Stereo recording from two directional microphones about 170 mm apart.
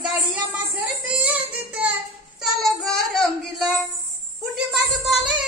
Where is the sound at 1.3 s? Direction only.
10° right (ahead or behind).